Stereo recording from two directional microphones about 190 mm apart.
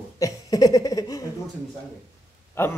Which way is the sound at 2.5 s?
10° left (ahead or behind).